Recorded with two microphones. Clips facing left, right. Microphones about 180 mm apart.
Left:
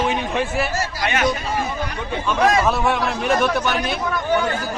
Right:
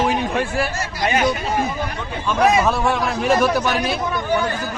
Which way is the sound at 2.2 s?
Centre (ahead or behind).